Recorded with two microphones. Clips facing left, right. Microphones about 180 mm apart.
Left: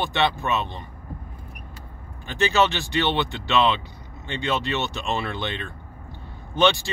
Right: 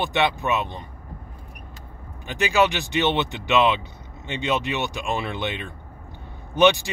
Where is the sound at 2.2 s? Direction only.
15° right (ahead or behind).